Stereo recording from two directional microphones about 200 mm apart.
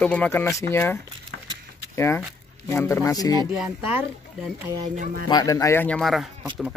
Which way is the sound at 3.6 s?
5° right (ahead or behind).